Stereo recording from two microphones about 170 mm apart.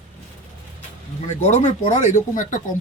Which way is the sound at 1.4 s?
45° left (ahead or behind).